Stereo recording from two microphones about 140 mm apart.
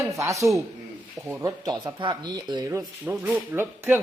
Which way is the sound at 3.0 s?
15° right (ahead or behind).